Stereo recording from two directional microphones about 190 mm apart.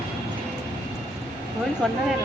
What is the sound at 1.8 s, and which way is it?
Speech, centre (ahead or behind).